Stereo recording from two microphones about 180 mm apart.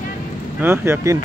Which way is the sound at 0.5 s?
10° right (ahead or behind).